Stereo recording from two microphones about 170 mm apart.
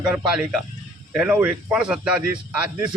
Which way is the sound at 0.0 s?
5° right (ahead or behind).